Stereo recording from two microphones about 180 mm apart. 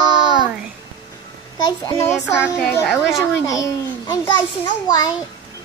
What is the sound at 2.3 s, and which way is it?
Child singing, 5° right (ahead or behind).